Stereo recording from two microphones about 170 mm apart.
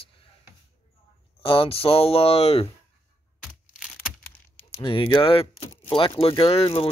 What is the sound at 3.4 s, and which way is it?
Tearing, 5° right (ahead or behind).